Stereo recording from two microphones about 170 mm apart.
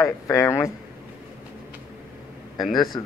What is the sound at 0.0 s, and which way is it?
Speech, 20° left (ahead or behind).